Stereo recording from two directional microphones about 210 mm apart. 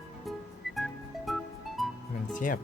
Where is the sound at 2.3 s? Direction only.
40° left (ahead or behind).